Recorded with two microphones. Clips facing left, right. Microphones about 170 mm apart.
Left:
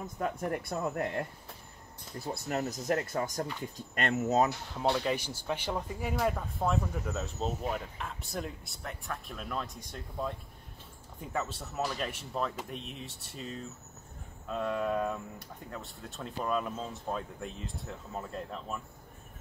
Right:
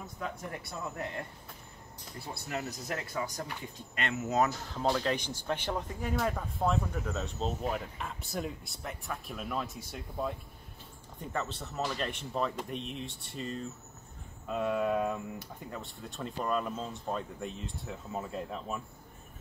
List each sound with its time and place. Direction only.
0.0 s speech: 50° left (ahead or behind)
2.2 s speech: 45° left (ahead or behind)
4.7 s speech: 10° left (ahead or behind)